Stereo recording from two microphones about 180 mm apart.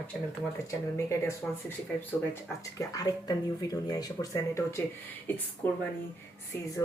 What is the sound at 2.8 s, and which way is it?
Speech, 20° left (ahead or behind).